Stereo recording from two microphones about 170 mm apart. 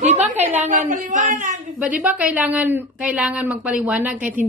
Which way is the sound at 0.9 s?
50° right (ahead or behind).